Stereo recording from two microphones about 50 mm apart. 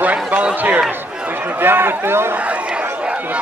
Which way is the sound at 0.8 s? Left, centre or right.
Right.